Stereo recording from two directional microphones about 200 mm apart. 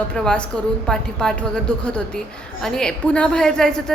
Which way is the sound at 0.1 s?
5° left (ahead or behind).